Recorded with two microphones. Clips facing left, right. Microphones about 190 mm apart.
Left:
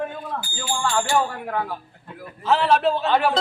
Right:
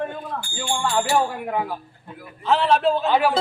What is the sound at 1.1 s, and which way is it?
Speech, 15° right (ahead or behind).